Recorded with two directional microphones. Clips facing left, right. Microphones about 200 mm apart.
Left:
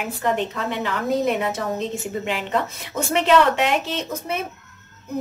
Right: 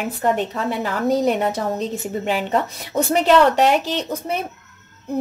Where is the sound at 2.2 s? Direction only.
40° right (ahead or behind).